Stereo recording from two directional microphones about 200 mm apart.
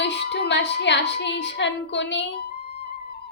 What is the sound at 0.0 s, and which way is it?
A woman's voice, 60° left (ahead or behind).